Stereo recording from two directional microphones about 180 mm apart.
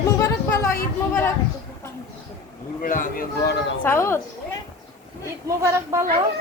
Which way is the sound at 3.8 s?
15° left (ahead or behind).